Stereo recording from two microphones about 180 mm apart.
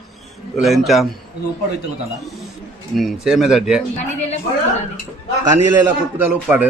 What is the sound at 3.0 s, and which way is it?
Speech, centre (ahead or behind).